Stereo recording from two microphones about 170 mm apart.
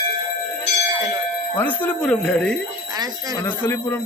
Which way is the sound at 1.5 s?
10° left (ahead or behind).